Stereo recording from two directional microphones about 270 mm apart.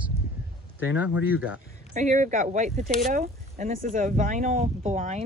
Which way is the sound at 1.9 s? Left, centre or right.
Right.